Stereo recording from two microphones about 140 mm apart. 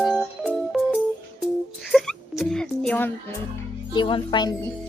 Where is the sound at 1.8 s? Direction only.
Centre (ahead or behind).